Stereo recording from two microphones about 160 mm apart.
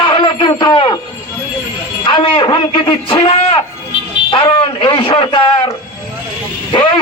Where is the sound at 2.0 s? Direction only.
30° left (ahead or behind).